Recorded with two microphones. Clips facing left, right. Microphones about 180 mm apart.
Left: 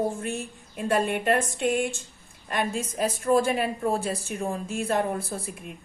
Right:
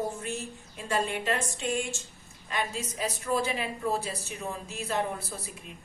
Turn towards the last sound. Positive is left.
turn(degrees=50)  # may be behind; listen again after turning